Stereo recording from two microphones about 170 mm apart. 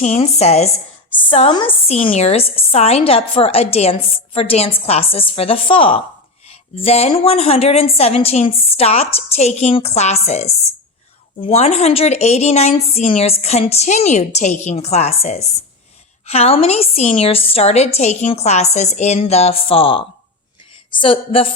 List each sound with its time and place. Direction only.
0.0 s a woman's voice: 40° left (ahead or behind)